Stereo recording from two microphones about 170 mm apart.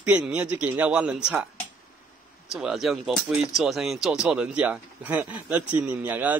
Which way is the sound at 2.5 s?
5° right (ahead or behind).